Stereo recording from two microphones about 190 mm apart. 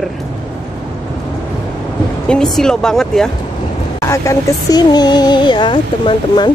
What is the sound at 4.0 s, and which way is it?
Speech, 15° left (ahead or behind).